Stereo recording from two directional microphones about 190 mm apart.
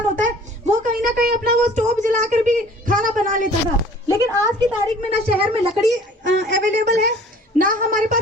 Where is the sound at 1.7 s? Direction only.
40° right (ahead or behind).